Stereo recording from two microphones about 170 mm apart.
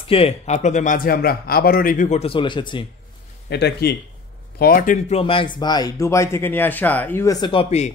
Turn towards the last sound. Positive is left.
turn(degrees=25)  # may be behind; listen again after turning